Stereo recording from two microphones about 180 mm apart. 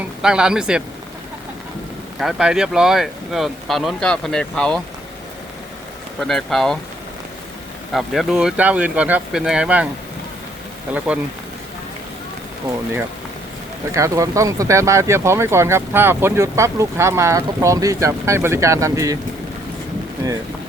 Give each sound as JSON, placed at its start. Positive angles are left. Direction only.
{"t": 0.2, "sound": "speech", "side_deg": -5}
{"t": 2.1, "sound": "speech", "side_deg": -5}
{"t": 6.1, "sound": "speech", "side_deg": 0}
{"t": 7.9, "sound": "speech", "side_deg": 0}
{"t": 10.9, "sound": "speech", "side_deg": -5}
{"t": 13.9, "sound": "speech", "side_deg": -15}